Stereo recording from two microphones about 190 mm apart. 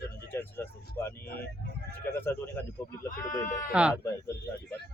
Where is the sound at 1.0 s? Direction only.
15° left (ahead or behind).